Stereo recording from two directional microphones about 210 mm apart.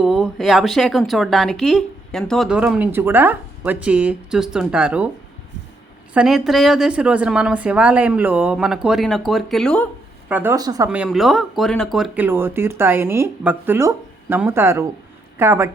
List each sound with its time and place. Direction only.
0.0 s speech: centre (ahead or behind)
6.1 s speech: centre (ahead or behind)
10.2 s speech: 10° right (ahead or behind)
10.8 s speech: 5° right (ahead or behind)